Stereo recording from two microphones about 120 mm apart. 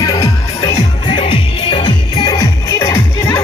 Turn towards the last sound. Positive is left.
turn(degrees=25)  # may be behind; listen again after turning